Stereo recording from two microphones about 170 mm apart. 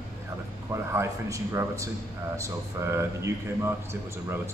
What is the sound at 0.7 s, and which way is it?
Speech, 15° right (ahead or behind).